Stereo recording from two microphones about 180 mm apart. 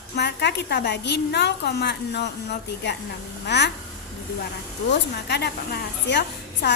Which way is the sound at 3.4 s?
70° left (ahead or behind).